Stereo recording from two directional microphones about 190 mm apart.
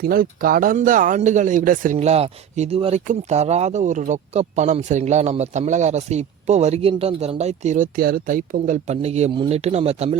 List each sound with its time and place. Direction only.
0.0 s speech: 50° right (ahead or behind); by 10.2 s 30° right (ahead or behind)